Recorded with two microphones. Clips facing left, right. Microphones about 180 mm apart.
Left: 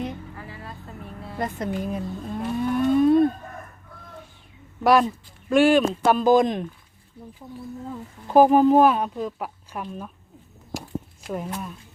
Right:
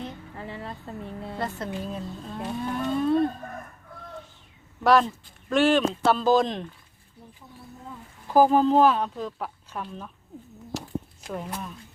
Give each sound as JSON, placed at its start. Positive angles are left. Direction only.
{"t": 0.3, "sound": "a sound", "side_deg": -25}
{"t": 1.4, "sound": "moo", "side_deg": 15}
{"t": 4.8, "sound": "speech", "side_deg": 10}
{"t": 8.3, "sound": "speech", "side_deg": 20}
{"t": 10.7, "sound": "a sound", "side_deg": 10}
{"t": 11.3, "sound": "speech", "side_deg": 10}